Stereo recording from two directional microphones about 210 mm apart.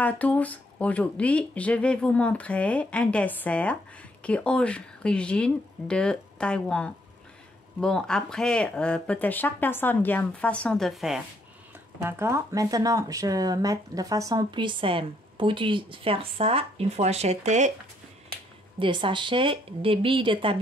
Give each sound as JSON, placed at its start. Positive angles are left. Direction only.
{"t": 0.0, "sound": "speech", "side_deg": 5}
{"t": 12.0, "sound": "speech", "side_deg": -15}
{"t": 18.8, "sound": "speech", "side_deg": -25}